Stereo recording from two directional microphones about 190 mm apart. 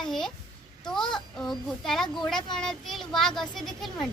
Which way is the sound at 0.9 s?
Centre (ahead or behind).